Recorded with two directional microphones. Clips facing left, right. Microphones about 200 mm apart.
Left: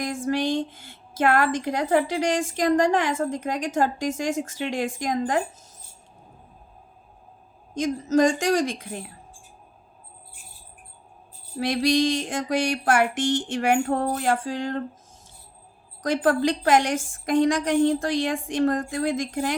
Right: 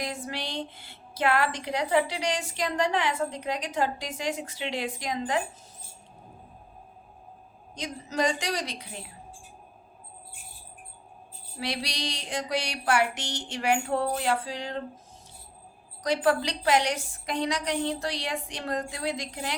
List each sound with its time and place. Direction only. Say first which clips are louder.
0.0 s a woman's voice: left 9 dB; 45° left (ahead or behind)
7.7 s a woman's voice: left 14 dB; 45° left (ahead or behind)
11.5 s a woman's voice: left 12 dB; 50° left (ahead or behind)
16.0 s a woman's voice: left 4 dB; 50° left (ahead or behind)